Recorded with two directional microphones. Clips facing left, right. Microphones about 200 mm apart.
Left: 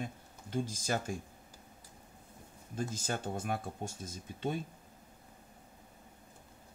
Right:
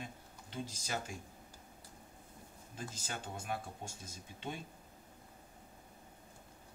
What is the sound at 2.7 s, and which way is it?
Speech, 45° left (ahead or behind).